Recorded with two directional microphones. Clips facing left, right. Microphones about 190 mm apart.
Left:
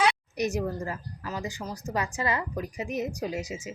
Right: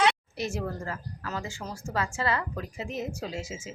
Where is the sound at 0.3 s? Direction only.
15° left (ahead or behind).